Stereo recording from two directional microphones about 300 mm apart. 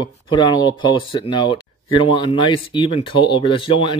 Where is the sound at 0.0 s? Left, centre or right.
Centre.